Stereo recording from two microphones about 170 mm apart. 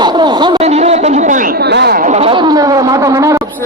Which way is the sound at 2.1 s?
35° right (ahead or behind).